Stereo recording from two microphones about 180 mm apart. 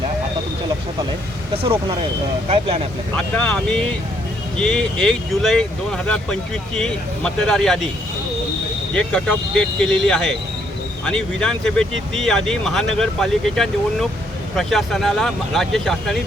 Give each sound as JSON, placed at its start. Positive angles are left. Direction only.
{"t": 2.5, "sound": "speech", "side_deg": -30}
{"t": 3.2, "sound": "speech", "side_deg": 5}
{"t": 9.0, "sound": "speech", "side_deg": 5}